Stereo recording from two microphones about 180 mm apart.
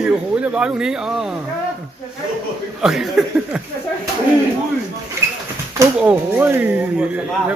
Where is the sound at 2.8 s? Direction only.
Centre (ahead or behind).